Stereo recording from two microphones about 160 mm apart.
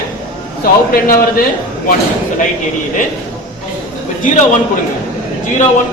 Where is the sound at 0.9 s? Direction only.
65° left (ahead or behind).